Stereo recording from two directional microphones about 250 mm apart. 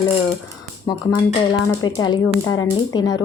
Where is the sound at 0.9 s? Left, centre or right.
Centre.